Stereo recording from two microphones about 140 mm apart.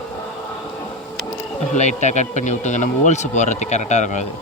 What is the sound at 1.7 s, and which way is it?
Speech, 55° left (ahead or behind).